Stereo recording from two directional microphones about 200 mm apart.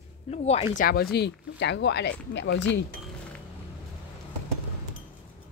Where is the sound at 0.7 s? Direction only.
50° left (ahead or behind).